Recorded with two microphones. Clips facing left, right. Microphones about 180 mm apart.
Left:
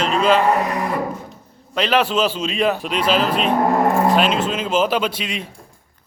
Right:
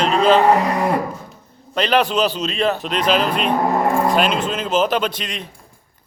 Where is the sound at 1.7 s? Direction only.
5° left (ahead or behind).